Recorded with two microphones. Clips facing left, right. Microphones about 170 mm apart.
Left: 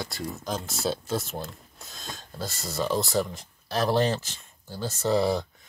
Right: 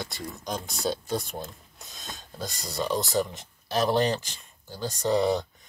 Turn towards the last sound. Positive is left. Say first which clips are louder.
# even
turn(degrees=0)  # may be behind; listen again after turning